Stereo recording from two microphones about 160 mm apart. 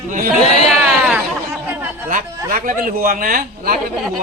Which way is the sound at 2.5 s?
60° right (ahead or behind).